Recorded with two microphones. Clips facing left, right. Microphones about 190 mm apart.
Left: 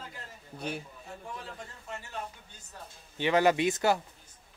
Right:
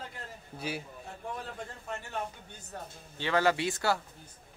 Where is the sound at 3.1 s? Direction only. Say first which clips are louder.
Left 3 dB; 15° left (ahead or behind).